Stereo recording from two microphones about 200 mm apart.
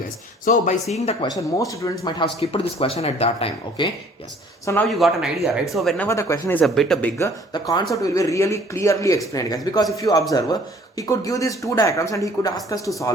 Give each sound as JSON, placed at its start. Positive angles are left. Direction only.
{"t": 0.4, "sound": "speech", "side_deg": 40}
{"t": 1.4, "sound": "speech", "side_deg": 15}
{"t": 4.6, "sound": "speech", "side_deg": 10}
{"t": 4.9, "sound": "speech", "side_deg": 0}
{"t": 6.1, "sound": "speech", "side_deg": 15}
{"t": 7.2, "sound": "speech", "side_deg": 15}